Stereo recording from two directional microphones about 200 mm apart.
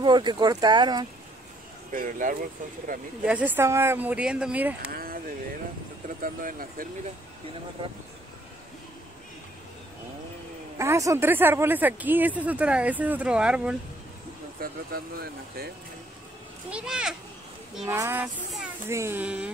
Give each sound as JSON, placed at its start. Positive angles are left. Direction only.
{"t": 0.0, "sound": "speech", "side_deg": -20}
{"t": 1.9, "sound": "speech", "side_deg": -40}
{"t": 3.3, "sound": "speech", "side_deg": -10}
{"t": 4.9, "sound": "a sound", "side_deg": -45}
{"t": 6.0, "sound": "speech", "side_deg": -45}
{"t": 10.8, "sound": "speech", "side_deg": -15}
{"t": 14.6, "sound": "speech", "side_deg": -50}
{"t": 16.7, "sound": "a child's voice", "side_deg": -5}